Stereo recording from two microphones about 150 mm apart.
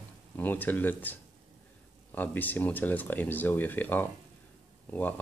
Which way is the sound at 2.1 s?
10° left (ahead or behind).